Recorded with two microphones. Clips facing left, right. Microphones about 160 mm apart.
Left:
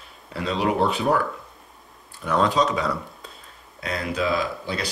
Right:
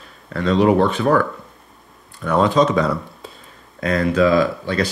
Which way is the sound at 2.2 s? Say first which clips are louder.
Right 5 dB; centre (ahead or behind).